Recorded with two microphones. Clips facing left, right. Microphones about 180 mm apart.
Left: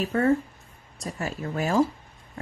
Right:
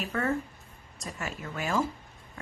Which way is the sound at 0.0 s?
30° left (ahead or behind).